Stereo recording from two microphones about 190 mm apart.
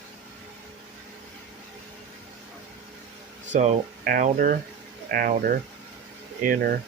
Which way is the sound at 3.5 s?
40° right (ahead or behind).